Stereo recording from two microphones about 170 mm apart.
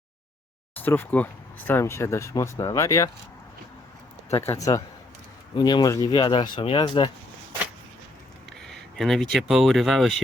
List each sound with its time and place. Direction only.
0.8 s speech: 10° left (ahead or behind)
4.3 s speech: 15° left (ahead or behind)
8.6 s a sound: centre (ahead or behind)
9.3 s speech: centre (ahead or behind)